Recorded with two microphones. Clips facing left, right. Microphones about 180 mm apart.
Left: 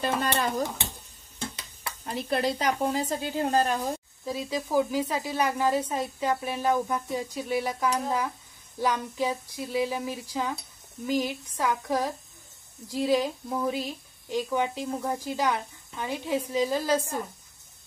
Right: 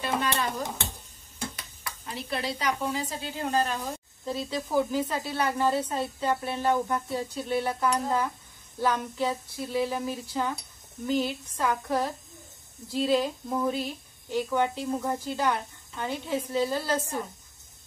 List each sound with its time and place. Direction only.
0.0 s a child's voice: 40° left (ahead or behind)
2.0 s a woman's voice: 45° left (ahead or behind)
4.3 s speech: 10° left (ahead or behind)